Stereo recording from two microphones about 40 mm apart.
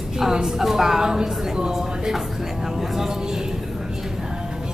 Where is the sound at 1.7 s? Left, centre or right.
Centre.